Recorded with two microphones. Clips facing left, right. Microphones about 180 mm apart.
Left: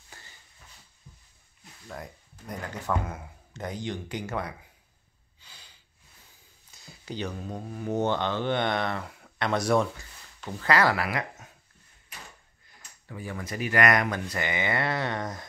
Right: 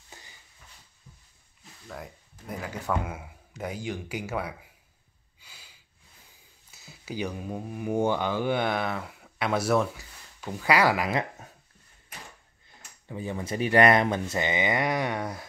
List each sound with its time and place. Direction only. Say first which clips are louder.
0.1 s a sound: right 1 dB; 20° right (ahead or behind)
1.9 s speech: even; 5° right (ahead or behind)
5.4 s snort: even; 10° right (ahead or behind)
6.7 s speech: right 1 dB; 5° right (ahead or behind)
13.1 s speech: right 4 dB; 20° right (ahead or behind)